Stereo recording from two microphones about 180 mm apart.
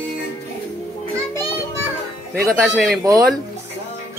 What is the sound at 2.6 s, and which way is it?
Speech, centre (ahead or behind).